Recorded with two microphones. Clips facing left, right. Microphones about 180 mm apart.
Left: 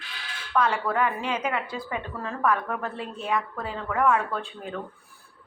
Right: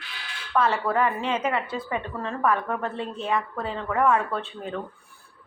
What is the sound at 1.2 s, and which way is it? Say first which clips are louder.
Speech: right 2 dB; 30° right (ahead or behind).